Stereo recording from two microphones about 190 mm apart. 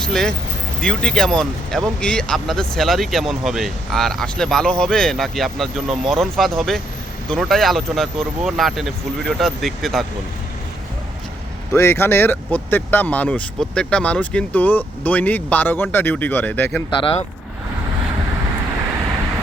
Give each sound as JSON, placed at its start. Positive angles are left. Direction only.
{"t": 0.0, "sound": "speech", "side_deg": 5}
{"t": 11.7, "sound": "speech", "side_deg": 15}
{"t": 17.0, "sound": "speech", "side_deg": 30}